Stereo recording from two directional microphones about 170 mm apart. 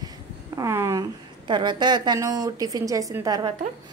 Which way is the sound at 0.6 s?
15° right (ahead or behind).